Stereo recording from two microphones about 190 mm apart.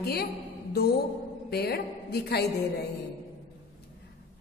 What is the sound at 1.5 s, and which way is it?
Speech, 55° left (ahead or behind).